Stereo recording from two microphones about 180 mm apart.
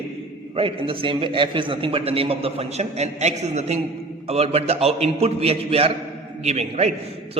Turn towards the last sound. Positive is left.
turn(degrees=-35)  # may be behind; listen again after turning